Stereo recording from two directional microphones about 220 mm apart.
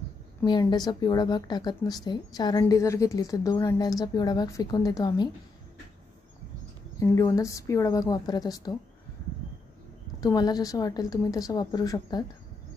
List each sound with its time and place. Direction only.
0.4 s a woman's voice: 20° left (ahead or behind)
7.0 s a woman's voice: 15° left (ahead or behind)
10.2 s a woman's voice: 15° left (ahead or behind)